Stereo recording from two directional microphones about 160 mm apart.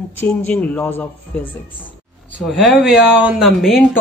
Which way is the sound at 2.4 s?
Centre (ahead or behind).